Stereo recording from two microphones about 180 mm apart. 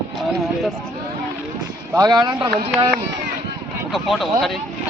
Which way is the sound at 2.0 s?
20° right (ahead or behind).